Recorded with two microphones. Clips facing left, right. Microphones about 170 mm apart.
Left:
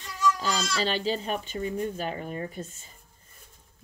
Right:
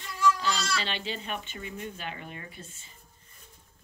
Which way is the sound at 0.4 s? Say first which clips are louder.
Left 2 dB; 40° left (ahead or behind).